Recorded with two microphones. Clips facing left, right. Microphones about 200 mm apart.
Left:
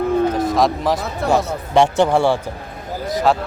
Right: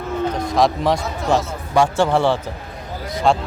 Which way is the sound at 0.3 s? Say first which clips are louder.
Left 1 dB; centre (ahead or behind).